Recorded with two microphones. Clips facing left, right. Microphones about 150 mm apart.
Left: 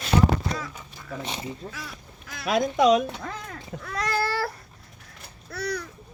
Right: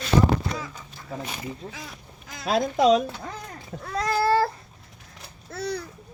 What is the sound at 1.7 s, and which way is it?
Speech, 20° right (ahead or behind).